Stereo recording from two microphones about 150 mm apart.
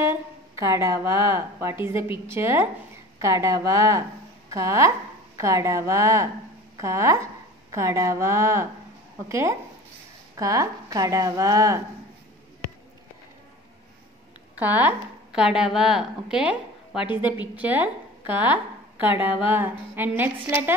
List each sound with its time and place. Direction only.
0.7 s a woman's voice: 20° right (ahead or behind)
14.6 s a woman's voice: 10° right (ahead or behind)